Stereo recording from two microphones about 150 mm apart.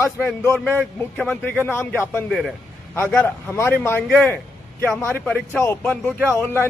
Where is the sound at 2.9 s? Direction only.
15° left (ahead or behind).